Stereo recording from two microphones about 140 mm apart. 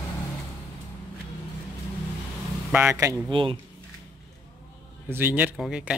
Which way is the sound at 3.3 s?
35° right (ahead or behind).